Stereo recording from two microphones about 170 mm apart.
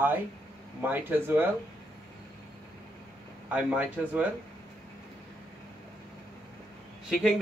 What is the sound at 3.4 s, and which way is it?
Speech, 10° right (ahead or behind).